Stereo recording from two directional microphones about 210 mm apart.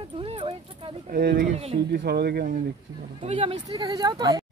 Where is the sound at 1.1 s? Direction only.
40° right (ahead or behind).